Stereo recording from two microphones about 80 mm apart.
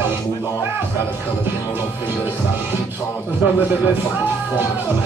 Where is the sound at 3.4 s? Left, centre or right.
Centre.